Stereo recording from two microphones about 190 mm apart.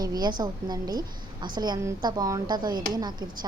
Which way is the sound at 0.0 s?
20° right (ahead or behind).